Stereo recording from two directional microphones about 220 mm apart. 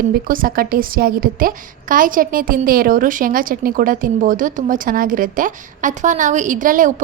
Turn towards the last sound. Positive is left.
turn(degrees=-35)  # may be behind; listen again after turning